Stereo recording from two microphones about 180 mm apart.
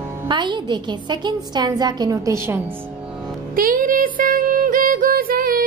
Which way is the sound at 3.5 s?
50° right (ahead or behind).